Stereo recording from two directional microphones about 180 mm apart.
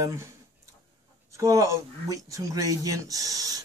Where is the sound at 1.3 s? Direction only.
15° right (ahead or behind).